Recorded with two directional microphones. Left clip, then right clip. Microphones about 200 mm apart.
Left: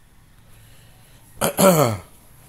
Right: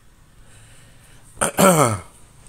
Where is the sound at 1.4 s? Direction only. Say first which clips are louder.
Right 1 dB; 10° right (ahead or behind).